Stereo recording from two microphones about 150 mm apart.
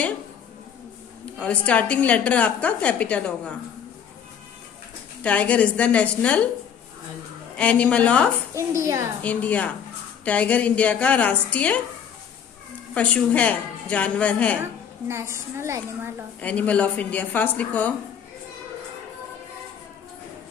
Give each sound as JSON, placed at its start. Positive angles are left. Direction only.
{"t": 1.4, "sound": "a woman's voice", "side_deg": 10}
{"t": 5.2, "sound": "a woman's voice", "side_deg": 10}
{"t": 7.5, "sound": "a woman's voice", "side_deg": 10}
{"t": 8.5, "sound": "speech", "side_deg": -20}
{"t": 9.2, "sound": "a woman's voice", "side_deg": 10}
{"t": 12.9, "sound": "a woman's voice", "side_deg": 10}
{"t": 14.6, "sound": "speech", "side_deg": -15}
{"t": 16.3, "sound": "a woman's voice", "side_deg": 10}